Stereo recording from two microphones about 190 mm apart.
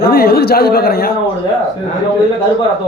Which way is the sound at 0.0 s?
50° left (ahead or behind).